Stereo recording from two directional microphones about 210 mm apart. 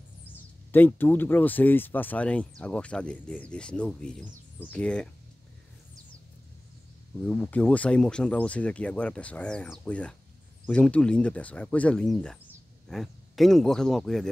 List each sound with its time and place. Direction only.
0.7 s speech: 10° left (ahead or behind)
7.2 s speech: 5° left (ahead or behind)